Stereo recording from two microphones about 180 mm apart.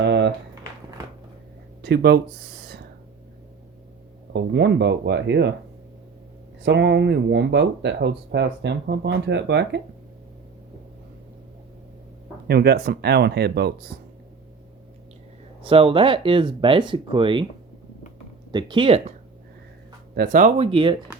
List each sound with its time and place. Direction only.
0.0 s a sound: 75° right (ahead or behind)
1.8 s speech: 65° right (ahead or behind)
4.3 s speech: 75° right (ahead or behind)
6.6 s speech: 80° right
12.5 s speech: 60° right (ahead or behind)
15.6 s speech: 30° right (ahead or behind)
18.5 s speech: 25° right (ahead or behind)
20.1 s speech: 50° right (ahead or behind)
20.6 s speech: 30° right (ahead or behind)